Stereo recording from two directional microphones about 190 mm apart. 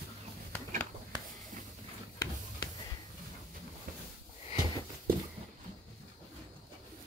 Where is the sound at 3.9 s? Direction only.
45° right (ahead or behind).